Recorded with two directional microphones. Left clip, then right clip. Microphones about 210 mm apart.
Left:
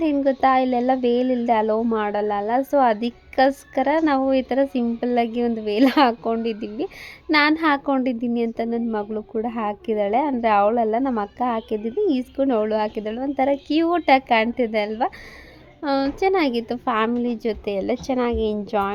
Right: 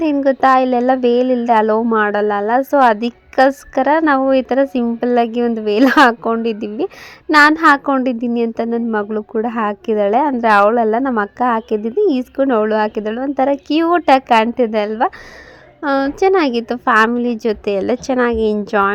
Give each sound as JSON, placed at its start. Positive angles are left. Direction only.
{"t": 0.0, "sound": "a woman's voice", "side_deg": -20}